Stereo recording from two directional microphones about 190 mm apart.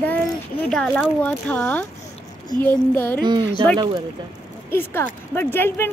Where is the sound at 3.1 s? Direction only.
20° right (ahead or behind).